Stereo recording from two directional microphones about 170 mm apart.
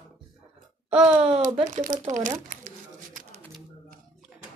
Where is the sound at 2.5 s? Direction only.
50° right (ahead or behind).